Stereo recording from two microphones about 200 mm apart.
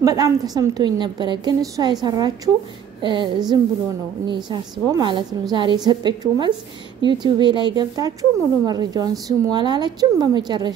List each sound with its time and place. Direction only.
0.0 s a woman's voice: 15° right (ahead or behind)